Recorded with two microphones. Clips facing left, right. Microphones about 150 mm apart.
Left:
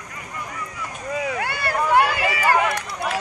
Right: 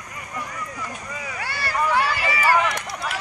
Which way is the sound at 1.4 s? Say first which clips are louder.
Left 2 dB; 55° left (ahead or behind).